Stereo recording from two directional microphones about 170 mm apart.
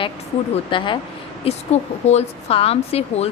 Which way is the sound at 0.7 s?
30° left (ahead or behind).